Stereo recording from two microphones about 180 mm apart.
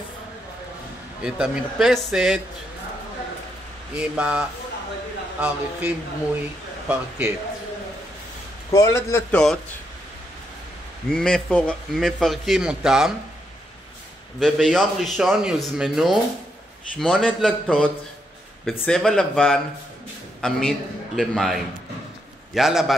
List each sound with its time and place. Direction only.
1.2 s a man's voice: 5° right (ahead or behind)
4.1 s a man's voice: 5° right (ahead or behind)
8.7 s a man's voice: 15° left (ahead or behind)
9.3 s a man's voice: 5° left (ahead or behind)
11.1 s a man's voice: 5° left (ahead or behind)
14.4 s a man's voice: centre (ahead or behind)